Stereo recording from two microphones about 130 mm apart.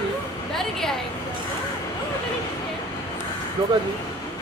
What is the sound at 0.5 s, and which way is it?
Speech, 5° left (ahead or behind).